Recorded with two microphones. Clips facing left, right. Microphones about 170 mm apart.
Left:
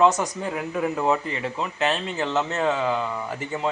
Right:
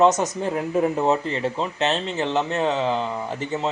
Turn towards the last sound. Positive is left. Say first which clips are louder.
# right 2 dB
turn(degrees=-20)  # may be behind; listen again after turning